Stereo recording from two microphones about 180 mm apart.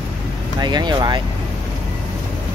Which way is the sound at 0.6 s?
25° right (ahead or behind).